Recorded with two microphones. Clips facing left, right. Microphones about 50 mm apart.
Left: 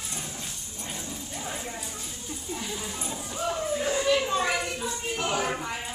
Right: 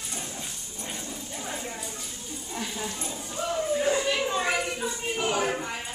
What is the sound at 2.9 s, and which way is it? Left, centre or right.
Clip-clop, centre.